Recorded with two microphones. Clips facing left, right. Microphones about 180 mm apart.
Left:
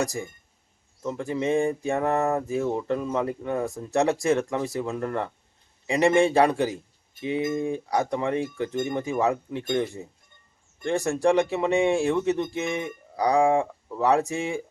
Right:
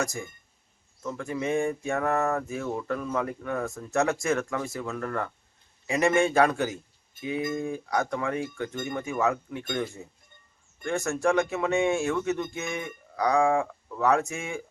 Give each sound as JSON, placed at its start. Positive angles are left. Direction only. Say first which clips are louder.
{"t": 0.0, "sound": "speech", "louder": "left 3 dB", "side_deg": 35}
{"t": 2.1, "sound": "speech", "louder": "left 2 dB", "side_deg": 15}
{"t": 2.5, "sound": "speech", "louder": "left 5 dB", "side_deg": 25}
{"t": 4.9, "sound": "speech", "louder": "left 3 dB", "side_deg": 20}
{"t": 13.4, "sound": "speech", "louder": "left 3 dB", "side_deg": 20}
{"t": 14.0, "sound": "speech", "louder": "left 2 dB", "side_deg": 35}